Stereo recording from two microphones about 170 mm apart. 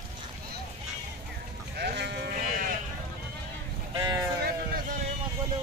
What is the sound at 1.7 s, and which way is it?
Sheep, 75° right (ahead or behind).